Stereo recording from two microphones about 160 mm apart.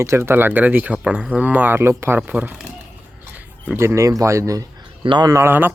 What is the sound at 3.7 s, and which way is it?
Speech, 15° right (ahead or behind).